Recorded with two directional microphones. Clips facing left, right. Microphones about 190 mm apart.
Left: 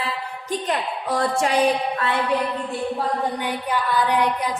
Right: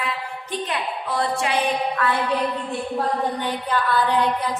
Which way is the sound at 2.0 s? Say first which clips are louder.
Right 4 dB; 25° left (ahead or behind).